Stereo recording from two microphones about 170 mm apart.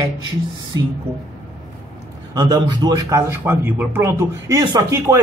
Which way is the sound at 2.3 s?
20° right (ahead or behind).